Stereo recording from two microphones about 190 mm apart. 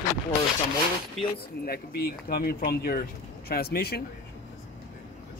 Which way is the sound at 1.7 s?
55° left (ahead or behind).